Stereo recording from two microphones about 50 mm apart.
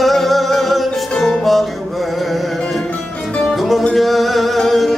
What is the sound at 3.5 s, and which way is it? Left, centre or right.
Music, centre.